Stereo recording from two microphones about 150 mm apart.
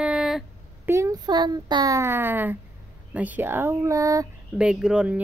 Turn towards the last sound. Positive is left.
turn(degrees=-5)  # may be behind; listen again after turning